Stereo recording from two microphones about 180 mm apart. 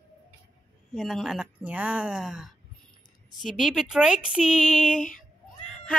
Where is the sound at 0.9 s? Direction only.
Centre (ahead or behind).